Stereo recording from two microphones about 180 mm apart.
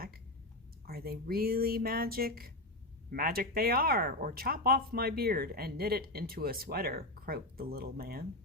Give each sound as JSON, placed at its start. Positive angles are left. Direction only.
{"t": 0.9, "sound": "speech", "side_deg": -60}